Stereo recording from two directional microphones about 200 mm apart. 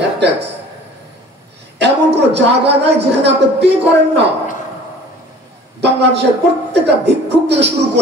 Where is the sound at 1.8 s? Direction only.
60° right (ahead or behind).